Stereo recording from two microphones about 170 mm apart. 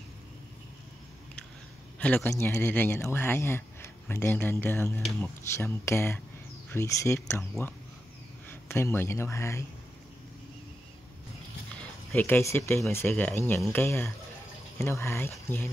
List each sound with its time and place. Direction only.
2.0 s a man's voice: 10° left (ahead or behind)
11.7 s a man's voice: 10° left (ahead or behind)